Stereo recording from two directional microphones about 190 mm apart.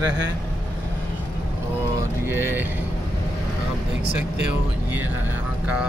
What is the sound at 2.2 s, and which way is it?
Speech, 10° right (ahead or behind).